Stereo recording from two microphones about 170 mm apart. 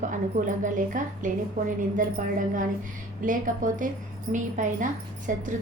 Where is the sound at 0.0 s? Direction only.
45° right (ahead or behind).